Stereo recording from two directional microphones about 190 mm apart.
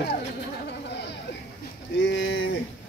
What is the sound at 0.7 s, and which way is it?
Chatter, 65° left (ahead or behind).